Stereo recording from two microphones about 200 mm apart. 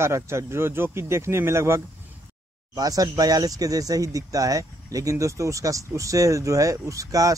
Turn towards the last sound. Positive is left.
turn(degrees=-15)  # may be behind; listen again after turning